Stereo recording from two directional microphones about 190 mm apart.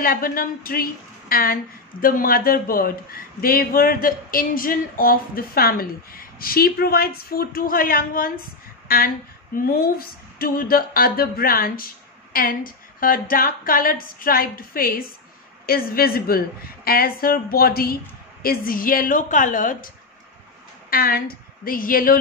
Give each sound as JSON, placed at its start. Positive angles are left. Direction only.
{"t": 0.0, "sound": "speech", "side_deg": 50}
{"t": 20.9, "sound": "speech", "side_deg": 50}